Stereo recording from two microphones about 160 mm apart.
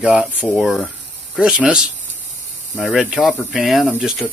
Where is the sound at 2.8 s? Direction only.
Centre (ahead or behind).